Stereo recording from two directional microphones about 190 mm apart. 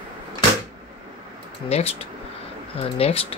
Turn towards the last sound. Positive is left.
turn(degrees=30)  # may be behind; listen again after turning